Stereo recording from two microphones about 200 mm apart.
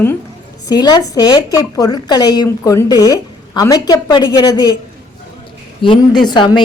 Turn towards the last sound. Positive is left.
turn(degrees=20)  # may be behind; listen again after turning